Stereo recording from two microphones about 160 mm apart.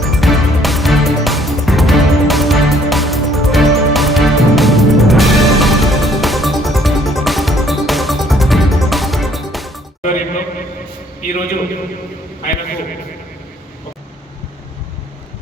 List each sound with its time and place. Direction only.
0.0 s music: centre (ahead or behind)
10.0 s music: 55° left (ahead or behind)
11.3 s a sound: 60° left (ahead or behind)